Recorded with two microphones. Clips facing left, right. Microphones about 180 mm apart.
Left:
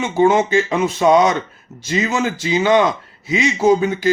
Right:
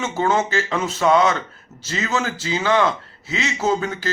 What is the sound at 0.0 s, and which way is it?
A man's voice, 15° left (ahead or behind).